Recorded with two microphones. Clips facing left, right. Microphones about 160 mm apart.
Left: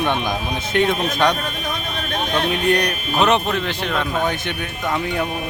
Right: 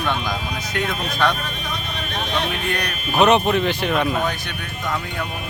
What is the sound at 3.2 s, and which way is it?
Speech, 10° right (ahead or behind).